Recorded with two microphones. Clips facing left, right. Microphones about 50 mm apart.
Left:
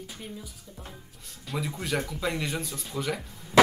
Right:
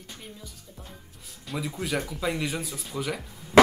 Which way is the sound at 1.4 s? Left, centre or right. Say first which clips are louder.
Right 1 dB; centre.